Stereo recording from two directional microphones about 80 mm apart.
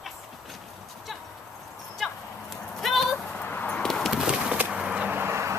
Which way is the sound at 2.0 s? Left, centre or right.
Centre.